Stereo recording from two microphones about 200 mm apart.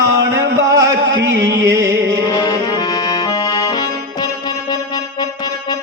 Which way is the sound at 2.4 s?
20° left (ahead or behind).